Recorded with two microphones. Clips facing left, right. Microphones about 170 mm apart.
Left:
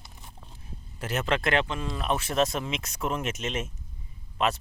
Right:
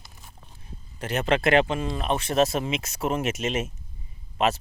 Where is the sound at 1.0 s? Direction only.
Centre (ahead or behind).